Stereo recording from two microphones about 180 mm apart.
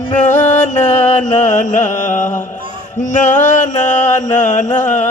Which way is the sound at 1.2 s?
40° left (ahead or behind).